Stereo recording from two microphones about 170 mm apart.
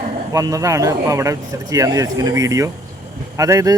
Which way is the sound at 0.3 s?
20° right (ahead or behind).